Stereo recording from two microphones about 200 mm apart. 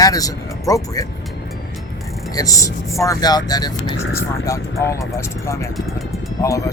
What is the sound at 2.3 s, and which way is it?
Speech, 15° left (ahead or behind).